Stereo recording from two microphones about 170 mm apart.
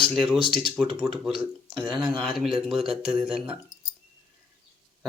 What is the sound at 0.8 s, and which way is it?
Speech, 35° right (ahead or behind).